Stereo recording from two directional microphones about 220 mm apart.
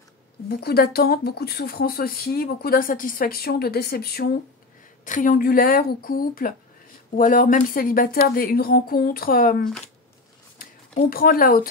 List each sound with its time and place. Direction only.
0.5 s a woman's voice: 45° left (ahead or behind)